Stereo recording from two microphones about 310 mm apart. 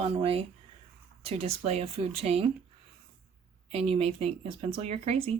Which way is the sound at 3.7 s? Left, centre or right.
Centre.